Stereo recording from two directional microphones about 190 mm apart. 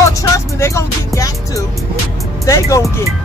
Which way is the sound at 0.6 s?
15° left (ahead or behind).